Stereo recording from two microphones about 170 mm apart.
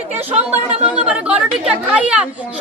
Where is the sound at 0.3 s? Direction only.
40° right (ahead or behind).